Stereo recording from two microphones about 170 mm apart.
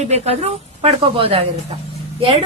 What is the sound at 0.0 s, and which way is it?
A woman's voice, 40° right (ahead or behind).